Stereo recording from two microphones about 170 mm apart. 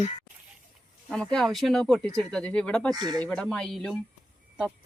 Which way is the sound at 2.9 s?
25° right (ahead or behind).